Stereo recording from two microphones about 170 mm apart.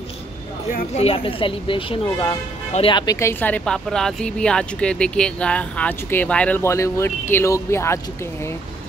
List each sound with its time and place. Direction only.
0.9 s speech: 35° left (ahead or behind)
3.2 s a woman's voice: 15° left (ahead or behind)